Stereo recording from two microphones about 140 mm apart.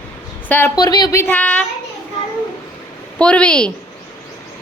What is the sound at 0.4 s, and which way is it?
Speech, 15° left (ahead or behind).